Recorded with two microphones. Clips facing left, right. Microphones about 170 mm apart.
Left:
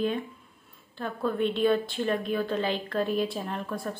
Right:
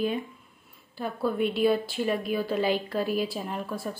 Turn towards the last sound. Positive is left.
turn(degrees=-5)  # may be behind; listen again after turning